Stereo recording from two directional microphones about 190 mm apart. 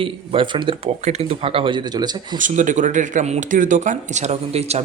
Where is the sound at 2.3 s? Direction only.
40° right (ahead or behind).